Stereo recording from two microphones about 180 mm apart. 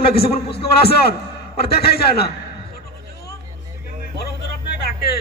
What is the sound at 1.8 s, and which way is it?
Speech, 60° left (ahead or behind).